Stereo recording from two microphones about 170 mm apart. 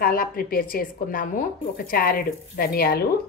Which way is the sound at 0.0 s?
60° left (ahead or behind).